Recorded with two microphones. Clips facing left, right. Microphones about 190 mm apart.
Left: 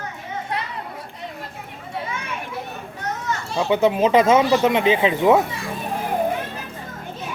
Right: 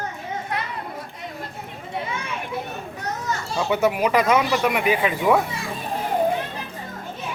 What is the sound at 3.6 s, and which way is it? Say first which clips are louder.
Speech: left 3 dB; 20° left (ahead or behind).